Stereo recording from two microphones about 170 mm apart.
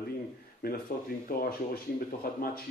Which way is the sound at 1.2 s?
55° left (ahead or behind).